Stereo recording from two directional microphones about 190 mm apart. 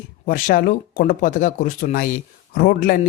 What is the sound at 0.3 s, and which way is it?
Speech, 45° left (ahead or behind).